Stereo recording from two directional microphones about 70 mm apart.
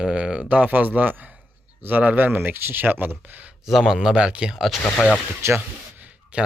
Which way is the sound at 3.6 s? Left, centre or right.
Centre.